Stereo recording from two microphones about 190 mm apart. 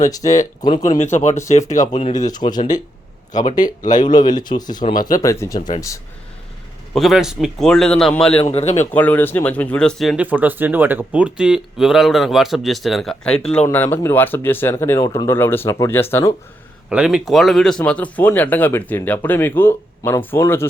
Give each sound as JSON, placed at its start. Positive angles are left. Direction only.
{"t": 0.2, "sound": "speech", "side_deg": 40}
{"t": 0.6, "sound": "speech", "side_deg": 20}
{"t": 0.9, "sound": "speech", "side_deg": 40}
{"t": 2.2, "sound": "speech", "side_deg": 20}
{"t": 3.6, "sound": "speech", "side_deg": 40}
{"t": 4.4, "sound": "speech", "side_deg": 20}
{"t": 4.9, "sound": "speech", "side_deg": 45}
{"t": 5.2, "sound": "speech", "side_deg": 15}
{"t": 6.9, "sound": "speech", "side_deg": 0}
{"t": 8.4, "sound": "speech", "side_deg": 35}
{"t": 8.9, "sound": "speech", "side_deg": 10}
{"t": 16.9, "sound": "speech", "side_deg": -5}